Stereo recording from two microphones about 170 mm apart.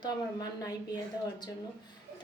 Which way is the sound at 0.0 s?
20° left (ahead or behind).